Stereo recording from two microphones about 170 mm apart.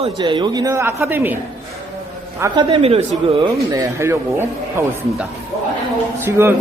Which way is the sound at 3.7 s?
15° right (ahead or behind).